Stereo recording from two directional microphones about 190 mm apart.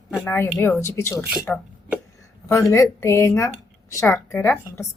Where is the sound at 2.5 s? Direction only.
15° left (ahead or behind).